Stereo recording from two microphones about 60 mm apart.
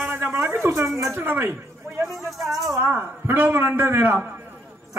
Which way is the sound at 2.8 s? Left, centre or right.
Right.